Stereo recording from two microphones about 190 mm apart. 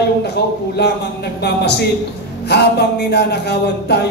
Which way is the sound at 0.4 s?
60° left (ahead or behind).